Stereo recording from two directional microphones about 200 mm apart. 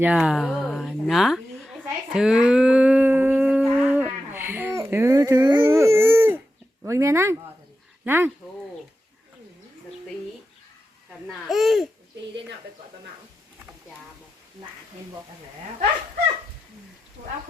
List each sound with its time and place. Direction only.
0.0 s speech: 5° right (ahead or behind)
2.1 s humming: 5° right (ahead or behind)
5.6 s a sound: 15° right (ahead or behind)
6.8 s speech: 15° right (ahead or behind)
11.4 s speech: centre (ahead or behind)